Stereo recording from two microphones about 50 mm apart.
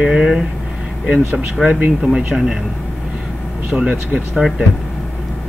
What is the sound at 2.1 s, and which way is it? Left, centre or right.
Speech, centre.